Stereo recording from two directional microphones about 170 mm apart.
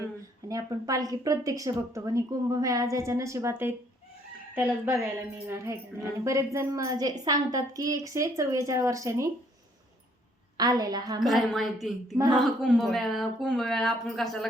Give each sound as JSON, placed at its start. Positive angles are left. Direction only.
{"t": 0.4, "sound": "a woman's voice", "side_deg": -20}
{"t": 5.5, "sound": "a woman's voice", "side_deg": -15}
{"t": 10.6, "sound": "a woman's voice", "side_deg": -25}
{"t": 11.2, "sound": "speech", "side_deg": 0}